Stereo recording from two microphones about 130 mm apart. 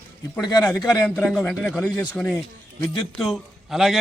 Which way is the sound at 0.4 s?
30° left (ahead or behind).